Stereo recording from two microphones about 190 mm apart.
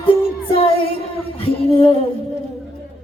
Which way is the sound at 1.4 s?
30° left (ahead or behind).